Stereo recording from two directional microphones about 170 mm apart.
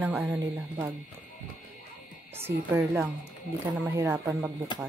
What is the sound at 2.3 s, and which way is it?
Speech, 15° right (ahead or behind).